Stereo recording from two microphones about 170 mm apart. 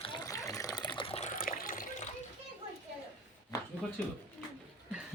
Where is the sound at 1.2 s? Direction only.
50° left (ahead or behind).